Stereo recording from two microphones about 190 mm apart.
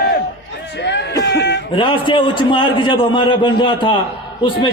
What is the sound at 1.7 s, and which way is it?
A man's voice, 25° left (ahead or behind).